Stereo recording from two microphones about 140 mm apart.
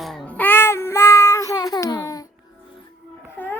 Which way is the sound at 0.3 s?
15° left (ahead or behind).